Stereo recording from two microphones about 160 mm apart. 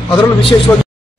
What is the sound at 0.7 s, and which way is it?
Speech, 15° left (ahead or behind).